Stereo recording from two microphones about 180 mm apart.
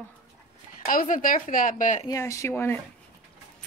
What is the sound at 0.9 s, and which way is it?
A woman's voice, 50° left (ahead or behind).